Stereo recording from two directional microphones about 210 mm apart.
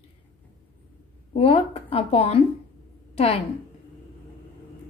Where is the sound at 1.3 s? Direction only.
30° left (ahead or behind).